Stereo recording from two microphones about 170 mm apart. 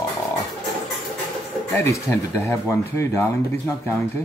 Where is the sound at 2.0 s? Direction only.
15° left (ahead or behind).